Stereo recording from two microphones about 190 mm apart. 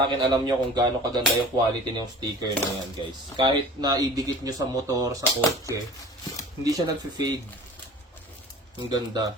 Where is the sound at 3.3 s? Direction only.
20° right (ahead or behind).